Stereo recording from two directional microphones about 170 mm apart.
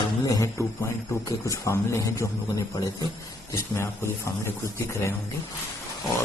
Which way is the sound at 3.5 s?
15° left (ahead or behind).